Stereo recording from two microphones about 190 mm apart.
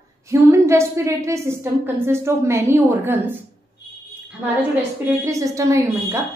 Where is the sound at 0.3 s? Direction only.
15° right (ahead or behind).